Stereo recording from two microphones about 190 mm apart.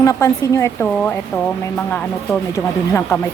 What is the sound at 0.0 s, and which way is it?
Speech, 15° left (ahead or behind).